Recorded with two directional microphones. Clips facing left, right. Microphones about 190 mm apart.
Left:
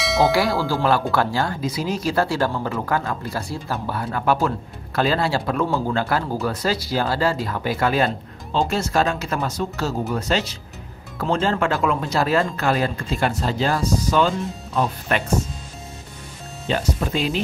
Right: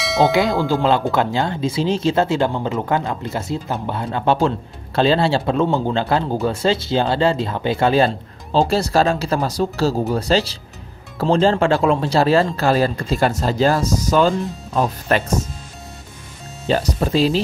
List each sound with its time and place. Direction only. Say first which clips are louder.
0.0 s tubular bells: right 2 dB; centre (ahead or behind)
0.3 s speech: right 3 dB; 20° right (ahead or behind); by 15.3 s 40° right (ahead or behind)
16.6 s speech: right 4 dB; 35° right (ahead or behind)